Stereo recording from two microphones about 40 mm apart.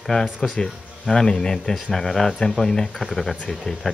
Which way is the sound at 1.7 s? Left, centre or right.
Centre.